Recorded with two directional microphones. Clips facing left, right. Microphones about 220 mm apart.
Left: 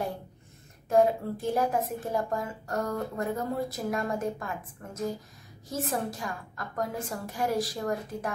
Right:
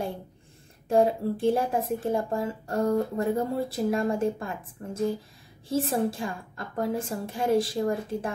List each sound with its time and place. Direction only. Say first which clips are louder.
0.8 s a woman's voice: right 1 dB; 30° right (ahead or behind)